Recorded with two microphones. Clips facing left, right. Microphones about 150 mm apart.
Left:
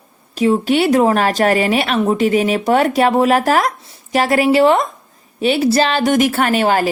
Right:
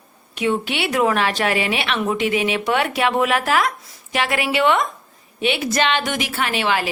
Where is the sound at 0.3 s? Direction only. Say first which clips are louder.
Left 8 dB; 35° left (ahead or behind).